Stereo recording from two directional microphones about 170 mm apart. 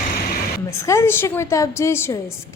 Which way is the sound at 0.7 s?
15° left (ahead or behind).